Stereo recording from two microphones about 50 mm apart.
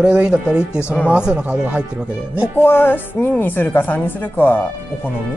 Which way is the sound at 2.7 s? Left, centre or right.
Left.